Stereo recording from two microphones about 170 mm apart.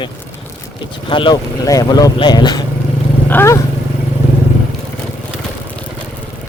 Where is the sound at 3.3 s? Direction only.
15° left (ahead or behind).